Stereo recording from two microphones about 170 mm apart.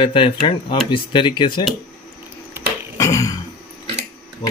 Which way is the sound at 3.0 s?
20° left (ahead or behind).